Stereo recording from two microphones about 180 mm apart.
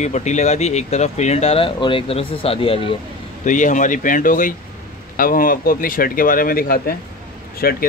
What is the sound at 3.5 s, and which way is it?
Speech, 45° left (ahead or behind).